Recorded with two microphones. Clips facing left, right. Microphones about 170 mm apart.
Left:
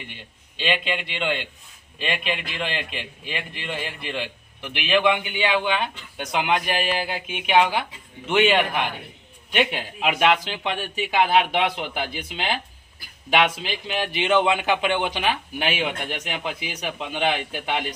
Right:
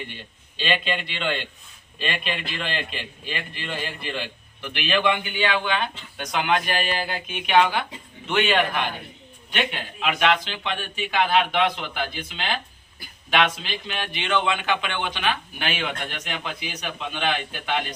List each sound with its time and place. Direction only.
0.0 s a man's voice: 15° left (ahead or behind)